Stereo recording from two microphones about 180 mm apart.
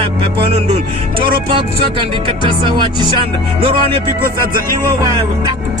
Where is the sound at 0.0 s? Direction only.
30° right (ahead or behind).